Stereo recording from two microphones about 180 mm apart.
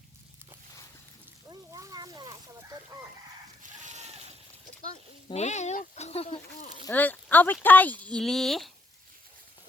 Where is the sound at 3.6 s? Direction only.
40° right (ahead or behind).